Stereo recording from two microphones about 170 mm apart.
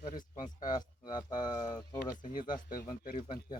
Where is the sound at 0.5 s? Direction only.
25° left (ahead or behind).